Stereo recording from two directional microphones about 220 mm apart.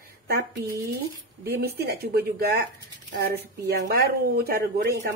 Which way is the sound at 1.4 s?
45° right (ahead or behind).